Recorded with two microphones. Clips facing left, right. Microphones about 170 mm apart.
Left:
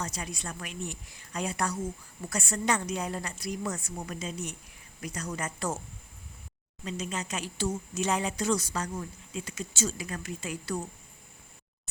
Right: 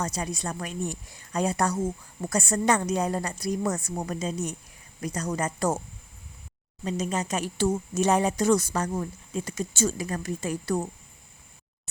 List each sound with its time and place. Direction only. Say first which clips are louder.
0.0 s a woman's voice: right 6 dB; 40° right (ahead or behind)
6.8 s speech: right 7 dB; 45° right (ahead or behind)